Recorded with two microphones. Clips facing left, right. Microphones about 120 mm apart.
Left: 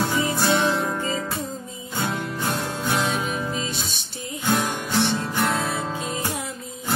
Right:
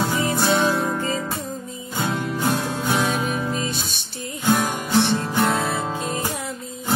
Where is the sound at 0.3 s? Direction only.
25° right (ahead or behind).